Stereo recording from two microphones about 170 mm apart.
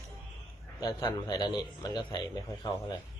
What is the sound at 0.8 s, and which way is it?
A man's voice, 25° left (ahead or behind).